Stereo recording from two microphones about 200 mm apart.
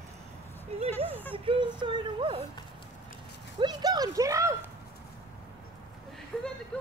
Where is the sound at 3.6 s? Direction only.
20° right (ahead or behind).